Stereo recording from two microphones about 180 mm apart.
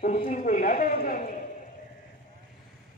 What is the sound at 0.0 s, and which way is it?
A man's voice, 35° left (ahead or behind).